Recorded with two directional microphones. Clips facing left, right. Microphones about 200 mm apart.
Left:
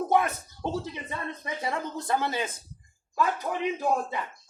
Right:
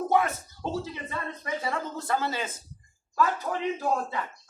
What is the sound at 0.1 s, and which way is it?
Speech, 15° left (ahead or behind).